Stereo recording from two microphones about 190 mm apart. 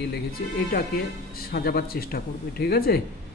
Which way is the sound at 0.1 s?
50° left (ahead or behind).